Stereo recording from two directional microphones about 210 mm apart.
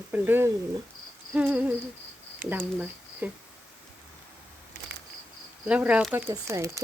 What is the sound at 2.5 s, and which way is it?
Speech, 10° right (ahead or behind).